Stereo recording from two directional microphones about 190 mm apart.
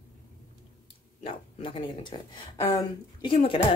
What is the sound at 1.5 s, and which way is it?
Speech, 30° left (ahead or behind).